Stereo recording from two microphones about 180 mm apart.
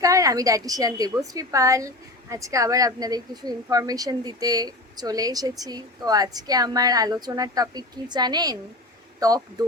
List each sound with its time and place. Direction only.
0.0 s a woman's voice: 20° right (ahead or behind)